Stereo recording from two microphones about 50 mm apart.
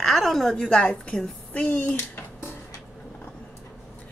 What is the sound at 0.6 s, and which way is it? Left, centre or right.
Speech, centre.